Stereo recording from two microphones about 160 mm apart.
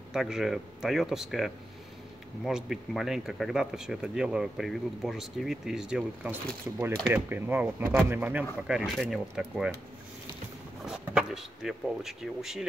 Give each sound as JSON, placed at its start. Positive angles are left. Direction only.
{"t": 0.1, "sound": "speech", "side_deg": -5}
{"t": 10.9, "sound": "speech", "side_deg": -5}